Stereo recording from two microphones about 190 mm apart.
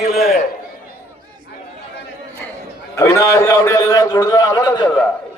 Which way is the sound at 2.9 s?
15° left (ahead or behind).